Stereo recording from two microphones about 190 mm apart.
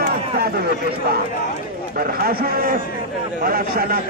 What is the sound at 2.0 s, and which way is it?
Speech, 50° right (ahead or behind).